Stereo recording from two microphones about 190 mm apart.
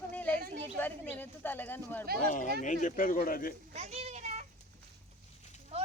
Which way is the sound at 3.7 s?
35° right (ahead or behind).